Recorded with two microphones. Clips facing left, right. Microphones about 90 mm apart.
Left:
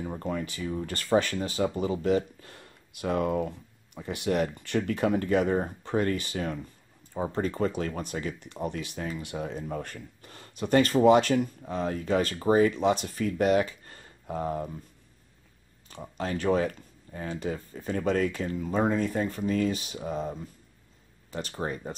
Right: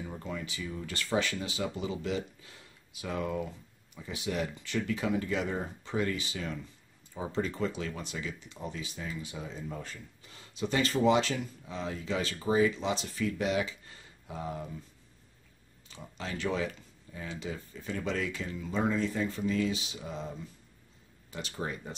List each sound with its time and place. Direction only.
0.0 s speech: 45° left (ahead or behind)
15.9 s speech: 50° left (ahead or behind)